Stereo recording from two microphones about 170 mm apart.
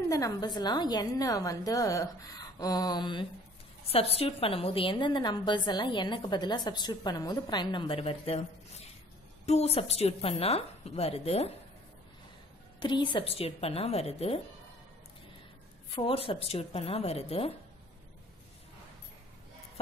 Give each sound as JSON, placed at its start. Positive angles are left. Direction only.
{"t": 0.1, "sound": "a woman's voice", "side_deg": 20}
{"t": 12.8, "sound": "a woman's voice", "side_deg": 30}
{"t": 16.0, "sound": "a woman's voice", "side_deg": 30}